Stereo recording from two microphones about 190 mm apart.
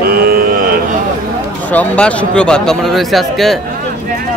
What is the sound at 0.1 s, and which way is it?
Cattle, 50° right (ahead or behind).